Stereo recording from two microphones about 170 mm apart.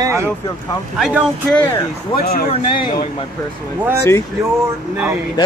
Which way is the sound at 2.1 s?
65° left (ahead or behind).